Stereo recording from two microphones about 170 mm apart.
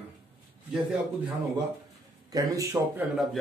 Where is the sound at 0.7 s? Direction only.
10° right (ahead or behind).